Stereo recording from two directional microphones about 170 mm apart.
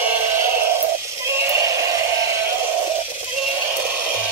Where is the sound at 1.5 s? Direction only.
15° right (ahead or behind).